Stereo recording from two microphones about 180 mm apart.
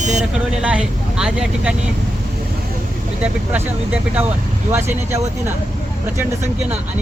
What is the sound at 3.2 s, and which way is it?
Speech, 10° right (ahead or behind).